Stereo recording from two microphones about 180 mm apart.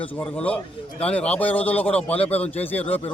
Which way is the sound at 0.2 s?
5° left (ahead or behind).